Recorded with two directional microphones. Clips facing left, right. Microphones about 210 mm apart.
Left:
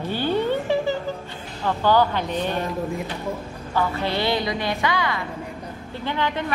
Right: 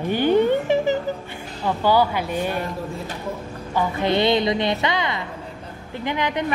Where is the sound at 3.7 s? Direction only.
15° right (ahead or behind).